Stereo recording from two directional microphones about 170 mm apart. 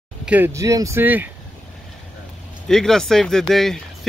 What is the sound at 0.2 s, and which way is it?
Speech, 10° right (ahead or behind).